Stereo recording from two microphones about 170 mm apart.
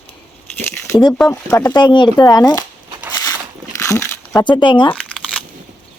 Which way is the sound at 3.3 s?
20° left (ahead or behind).